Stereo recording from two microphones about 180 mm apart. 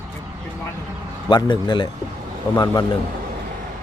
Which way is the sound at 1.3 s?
25° left (ahead or behind).